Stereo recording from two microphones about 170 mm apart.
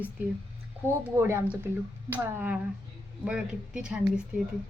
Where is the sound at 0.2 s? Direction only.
10° right (ahead or behind).